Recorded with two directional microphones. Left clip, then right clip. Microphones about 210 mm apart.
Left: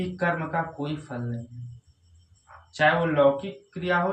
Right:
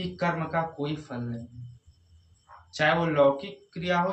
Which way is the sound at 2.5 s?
25° left (ahead or behind).